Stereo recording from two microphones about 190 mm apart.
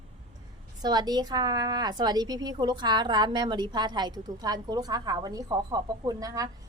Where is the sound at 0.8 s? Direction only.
20° right (ahead or behind).